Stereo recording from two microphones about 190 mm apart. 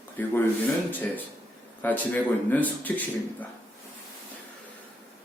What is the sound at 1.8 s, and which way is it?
Speech, 10° left (ahead or behind).